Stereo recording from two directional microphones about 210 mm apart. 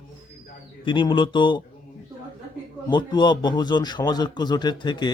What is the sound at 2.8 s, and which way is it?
A man's voice, 20° left (ahead or behind).